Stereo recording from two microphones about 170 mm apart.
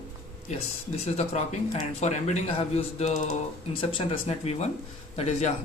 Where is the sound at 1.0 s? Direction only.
40° left (ahead or behind).